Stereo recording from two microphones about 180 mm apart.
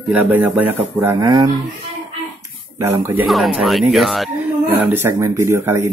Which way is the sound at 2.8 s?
15° right (ahead or behind).